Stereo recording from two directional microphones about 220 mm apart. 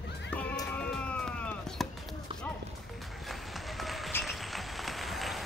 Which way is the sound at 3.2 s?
Centre (ahead or behind).